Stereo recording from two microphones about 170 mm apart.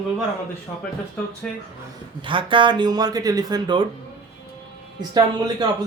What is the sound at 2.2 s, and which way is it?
Speech, 30° right (ahead or behind).